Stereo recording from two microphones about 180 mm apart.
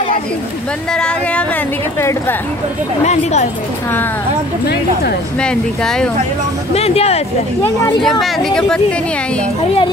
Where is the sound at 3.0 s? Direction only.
40° left (ahead or behind).